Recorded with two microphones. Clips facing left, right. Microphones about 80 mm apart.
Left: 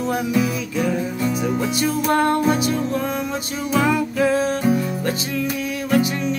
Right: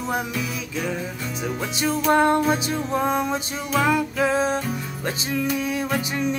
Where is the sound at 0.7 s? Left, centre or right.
Centre.